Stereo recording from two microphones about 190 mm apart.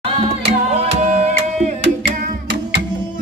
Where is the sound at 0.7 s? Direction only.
35° right (ahead or behind).